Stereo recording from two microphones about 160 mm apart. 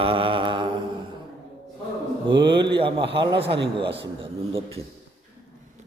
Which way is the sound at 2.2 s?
30° right (ahead or behind).